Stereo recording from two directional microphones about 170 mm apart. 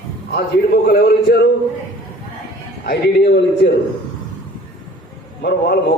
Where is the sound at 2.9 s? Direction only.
80° left.